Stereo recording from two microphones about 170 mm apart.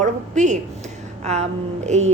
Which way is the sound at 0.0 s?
45° right (ahead or behind).